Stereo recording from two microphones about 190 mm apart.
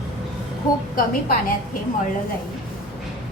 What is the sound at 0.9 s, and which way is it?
Speech, 50° left (ahead or behind).